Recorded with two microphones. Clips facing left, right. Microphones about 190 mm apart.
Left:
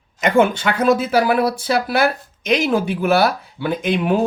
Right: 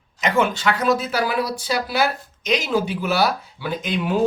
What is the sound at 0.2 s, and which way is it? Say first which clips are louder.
Speech: left 5 dB; 50° left (ahead or behind).